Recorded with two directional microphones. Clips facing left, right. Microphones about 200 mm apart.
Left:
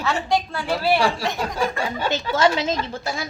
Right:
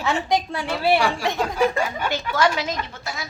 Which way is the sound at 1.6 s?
30° left (ahead or behind).